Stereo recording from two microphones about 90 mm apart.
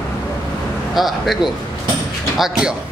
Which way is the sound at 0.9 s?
Centre (ahead or behind).